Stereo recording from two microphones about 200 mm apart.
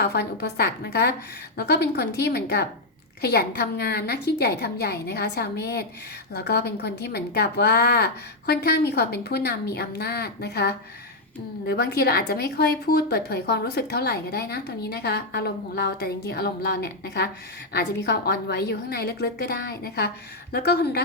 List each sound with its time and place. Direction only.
0.0 s a woman's voice: 55° left (ahead or behind)